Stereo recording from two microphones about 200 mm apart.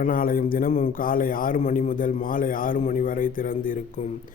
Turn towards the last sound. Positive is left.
turn(degrees=45)  # may be behind; listen again after turning